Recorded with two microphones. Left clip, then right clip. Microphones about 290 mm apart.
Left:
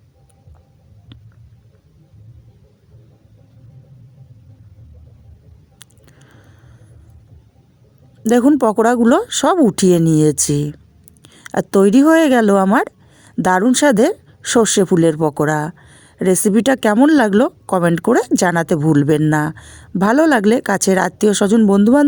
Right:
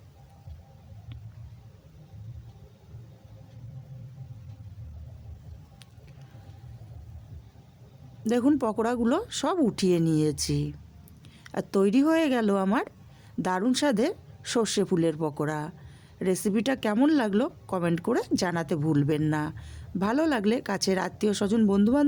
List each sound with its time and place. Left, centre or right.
8.2 s speech: left